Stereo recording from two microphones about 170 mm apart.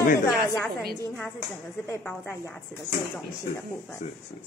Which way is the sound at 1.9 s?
10° left (ahead or behind).